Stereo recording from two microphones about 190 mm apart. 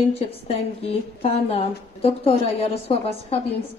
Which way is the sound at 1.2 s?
30° left (ahead or behind).